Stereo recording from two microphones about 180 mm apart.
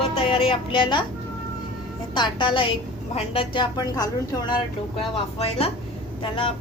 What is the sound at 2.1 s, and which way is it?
Speech, 25° left (ahead or behind).